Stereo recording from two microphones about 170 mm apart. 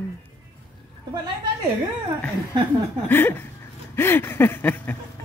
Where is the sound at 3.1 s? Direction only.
10° left (ahead or behind).